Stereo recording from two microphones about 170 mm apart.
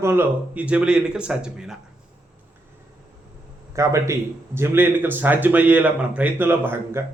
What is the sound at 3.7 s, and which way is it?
A man's voice, 20° right (ahead or behind).